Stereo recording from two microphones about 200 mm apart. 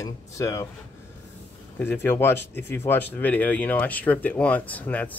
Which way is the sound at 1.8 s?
10° left (ahead or behind).